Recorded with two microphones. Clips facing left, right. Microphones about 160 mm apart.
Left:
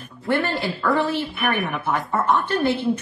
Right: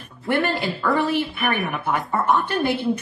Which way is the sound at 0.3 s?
20° right (ahead or behind).